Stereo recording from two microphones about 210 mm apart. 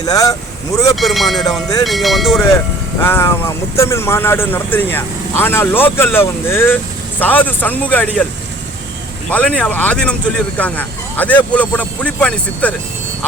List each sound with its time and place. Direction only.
0.0 s speech: 15° left (ahead or behind)
0.9 s speech: centre (ahead or behind)
3.0 s speech: 10° left (ahead or behind)
9.3 s speech: 5° left (ahead or behind)